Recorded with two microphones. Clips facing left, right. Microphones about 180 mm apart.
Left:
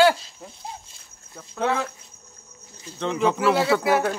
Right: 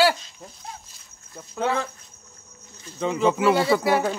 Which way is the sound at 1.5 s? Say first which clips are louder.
Even; centre (ahead or behind).